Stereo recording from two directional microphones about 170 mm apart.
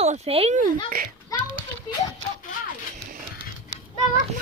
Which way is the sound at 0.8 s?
60° right (ahead or behind).